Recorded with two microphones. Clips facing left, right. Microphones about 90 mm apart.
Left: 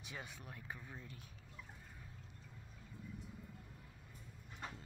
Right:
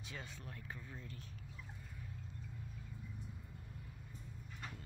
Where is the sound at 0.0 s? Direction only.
15° left (ahead or behind).